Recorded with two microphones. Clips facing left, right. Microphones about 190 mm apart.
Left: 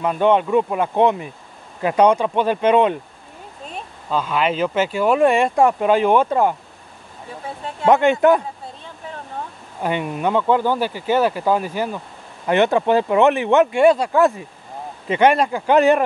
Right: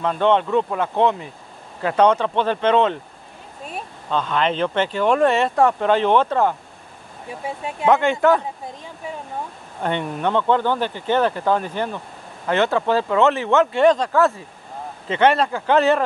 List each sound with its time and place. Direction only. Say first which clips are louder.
0.0 s speech: left 2 dB; 10° left (ahead or behind)
4.1 s speech: left 1 dB; 5° left (ahead or behind)
7.9 s speech: left 3 dB; 20° left (ahead or behind)
9.8 s speech: left 1 dB; 10° left (ahead or behind)